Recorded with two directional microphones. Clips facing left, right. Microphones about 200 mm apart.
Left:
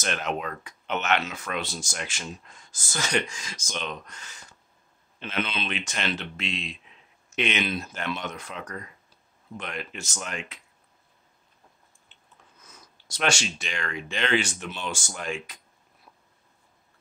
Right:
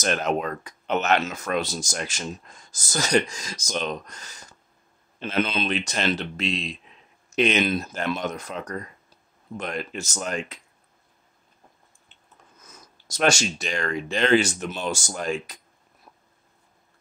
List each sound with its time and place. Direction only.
0.0 s speech: 40° right (ahead or behind)
12.6 s speech: 45° right (ahead or behind)